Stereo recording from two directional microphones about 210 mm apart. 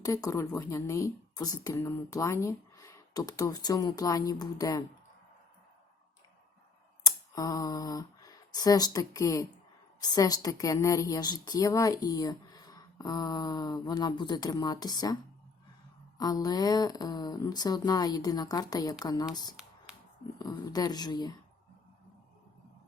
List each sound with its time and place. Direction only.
0.0 s a woman's voice: 15° left (ahead or behind)
7.0 s a woman's voice: 15° left (ahead or behind)
19.9 s a sound: 5° right (ahead or behind)
20.4 s speech: 20° left (ahead or behind)